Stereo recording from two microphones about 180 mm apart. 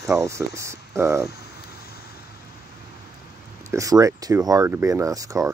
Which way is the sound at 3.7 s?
20° right (ahead or behind).